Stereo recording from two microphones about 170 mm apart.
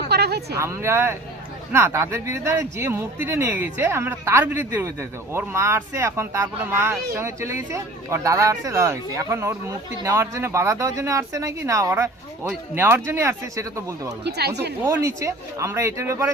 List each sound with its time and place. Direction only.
0.1 s a sound: 70° right (ahead or behind)
0.5 s speech: 15° right (ahead or behind)
14.3 s speech: 75° right (ahead or behind)
14.8 s speech: 15° right (ahead or behind)